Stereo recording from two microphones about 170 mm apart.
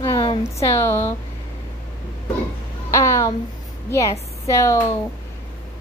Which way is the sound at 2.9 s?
15° left (ahead or behind).